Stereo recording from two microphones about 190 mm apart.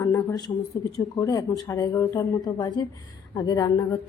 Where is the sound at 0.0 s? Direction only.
15° left (ahead or behind).